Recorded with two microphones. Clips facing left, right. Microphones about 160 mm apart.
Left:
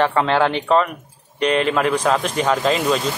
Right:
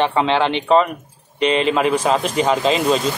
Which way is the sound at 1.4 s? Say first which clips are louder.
Right 1 dB; 25° right (ahead or behind).